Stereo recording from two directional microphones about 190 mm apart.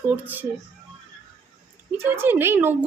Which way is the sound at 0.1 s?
10° right (ahead or behind).